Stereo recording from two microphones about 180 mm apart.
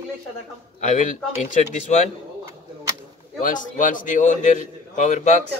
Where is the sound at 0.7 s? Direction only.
40° left (ahead or behind).